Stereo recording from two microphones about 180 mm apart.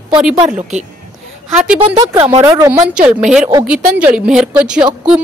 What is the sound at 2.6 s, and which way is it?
Speech, 20° right (ahead or behind).